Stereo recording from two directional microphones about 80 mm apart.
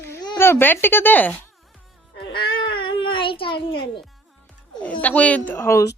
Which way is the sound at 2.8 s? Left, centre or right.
Left.